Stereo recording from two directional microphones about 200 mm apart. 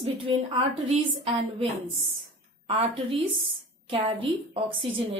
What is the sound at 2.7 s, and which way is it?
A woman's voice, 25° right (ahead or behind).